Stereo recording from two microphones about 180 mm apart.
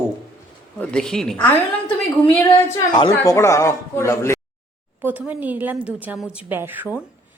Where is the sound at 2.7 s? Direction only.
25° left (ahead or behind).